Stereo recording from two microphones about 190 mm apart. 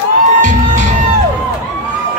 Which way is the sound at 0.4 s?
75° left (ahead or behind).